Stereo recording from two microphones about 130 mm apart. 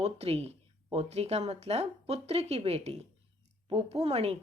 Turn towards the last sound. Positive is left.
turn(degrees=-50)  # may be behind; listen again after turning